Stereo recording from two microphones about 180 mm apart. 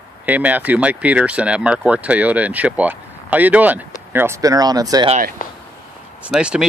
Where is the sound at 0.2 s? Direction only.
10° right (ahead or behind).